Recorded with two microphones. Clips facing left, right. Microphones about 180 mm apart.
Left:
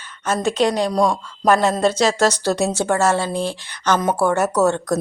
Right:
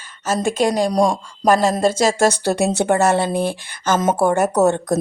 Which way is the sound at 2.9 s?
15° right (ahead or behind).